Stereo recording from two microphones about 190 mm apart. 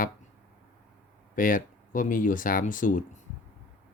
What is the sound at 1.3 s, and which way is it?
Speech, 45° left (ahead or behind).